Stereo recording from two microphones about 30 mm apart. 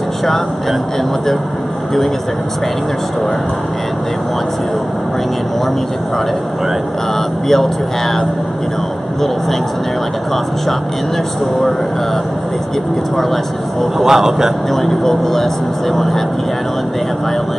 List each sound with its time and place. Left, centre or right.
0.2 s a man's voice: centre
7.4 s speech: centre
13.2 s a man's voice: centre
13.9 s speech: centre
14.7 s speech: centre